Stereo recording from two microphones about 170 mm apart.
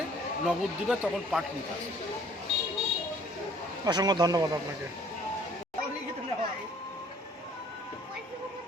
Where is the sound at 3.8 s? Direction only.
25° right (ahead or behind).